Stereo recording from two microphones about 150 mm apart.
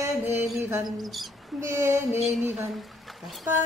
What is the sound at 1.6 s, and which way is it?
Speech, 15° right (ahead or behind).